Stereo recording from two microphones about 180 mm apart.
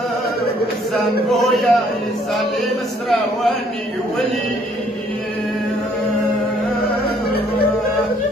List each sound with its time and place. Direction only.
0.9 s speech: centre (ahead or behind)
7.2 s music: 60° left (ahead or behind)